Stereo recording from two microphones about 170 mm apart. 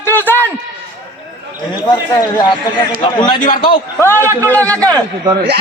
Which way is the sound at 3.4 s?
55° left (ahead or behind).